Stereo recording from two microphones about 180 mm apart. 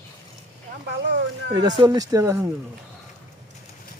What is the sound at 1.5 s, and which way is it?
Speech, 20° right (ahead or behind).